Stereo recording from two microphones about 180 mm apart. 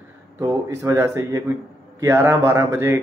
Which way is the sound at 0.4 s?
15° right (ahead or behind).